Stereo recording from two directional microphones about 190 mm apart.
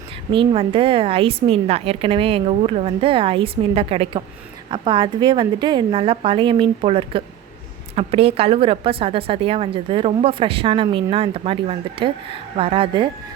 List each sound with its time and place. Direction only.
0.3 s a woman's voice: 30° right (ahead or behind)